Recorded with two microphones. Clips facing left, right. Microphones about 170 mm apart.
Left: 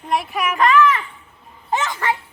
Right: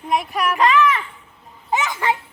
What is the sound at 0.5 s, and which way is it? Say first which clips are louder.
Speech: left 2 dB; 20° right (ahead or behind).